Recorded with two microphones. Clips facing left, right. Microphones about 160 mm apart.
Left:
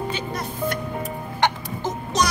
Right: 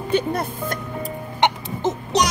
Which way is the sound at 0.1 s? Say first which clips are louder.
Right 8 dB; 55° right (ahead or behind).